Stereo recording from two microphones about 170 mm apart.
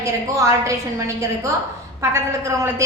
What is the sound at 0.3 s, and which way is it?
Speech, 20° right (ahead or behind).